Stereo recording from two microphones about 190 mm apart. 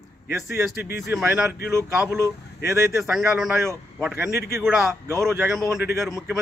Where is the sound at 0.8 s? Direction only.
55° left (ahead or behind).